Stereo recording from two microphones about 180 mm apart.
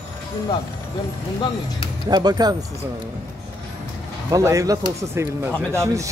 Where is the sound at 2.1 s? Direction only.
20° right (ahead or behind).